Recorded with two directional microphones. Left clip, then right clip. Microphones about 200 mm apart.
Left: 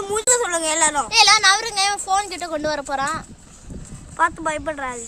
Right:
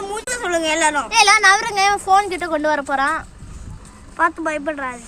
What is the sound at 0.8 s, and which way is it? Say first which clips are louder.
Speech: even; 15° left (ahead or behind).